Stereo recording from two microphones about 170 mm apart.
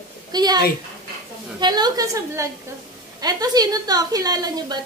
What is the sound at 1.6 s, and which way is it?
A woman's voice, 25° right (ahead or behind).